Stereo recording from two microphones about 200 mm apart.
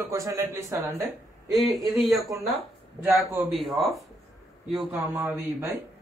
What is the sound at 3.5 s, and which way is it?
Speech, centre (ahead or behind).